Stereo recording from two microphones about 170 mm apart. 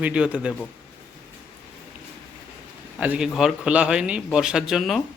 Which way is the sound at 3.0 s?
5° right (ahead or behind).